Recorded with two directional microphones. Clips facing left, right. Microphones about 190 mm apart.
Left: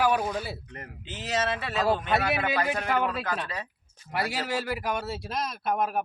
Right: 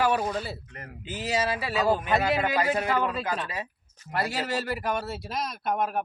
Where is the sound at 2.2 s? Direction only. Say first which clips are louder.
Right 2 dB; 15° right (ahead or behind).